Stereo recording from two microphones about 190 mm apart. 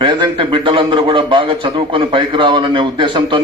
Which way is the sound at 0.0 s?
25° right (ahead or behind).